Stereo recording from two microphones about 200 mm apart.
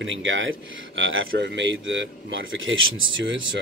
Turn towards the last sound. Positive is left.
turn(degrees=-70)  # may be behind; listen again after turning